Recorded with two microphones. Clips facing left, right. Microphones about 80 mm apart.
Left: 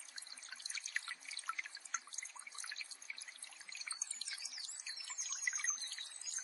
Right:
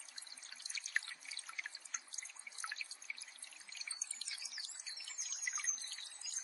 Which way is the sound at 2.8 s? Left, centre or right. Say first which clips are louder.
Right 2 dB; left.